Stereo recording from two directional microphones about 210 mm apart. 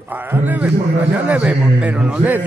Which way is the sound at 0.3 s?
10° right (ahead or behind).